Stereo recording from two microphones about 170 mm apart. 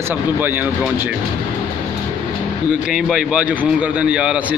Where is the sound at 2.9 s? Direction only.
5° right (ahead or behind).